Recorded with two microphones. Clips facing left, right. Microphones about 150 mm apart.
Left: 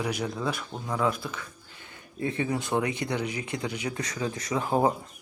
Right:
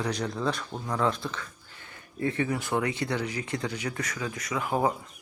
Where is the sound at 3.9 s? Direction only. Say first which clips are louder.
Left 2 dB; 30° left (ahead or behind).